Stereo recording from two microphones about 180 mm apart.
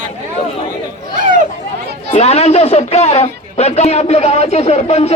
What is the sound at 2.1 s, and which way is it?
Speech, 35° left (ahead or behind).